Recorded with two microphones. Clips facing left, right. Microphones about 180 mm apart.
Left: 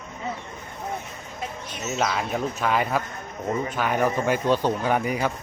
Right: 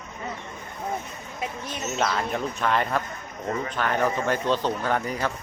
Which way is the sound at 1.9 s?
5° left (ahead or behind).